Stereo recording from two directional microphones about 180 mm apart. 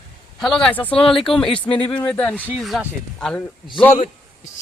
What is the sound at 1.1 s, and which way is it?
Speech, centre (ahead or behind).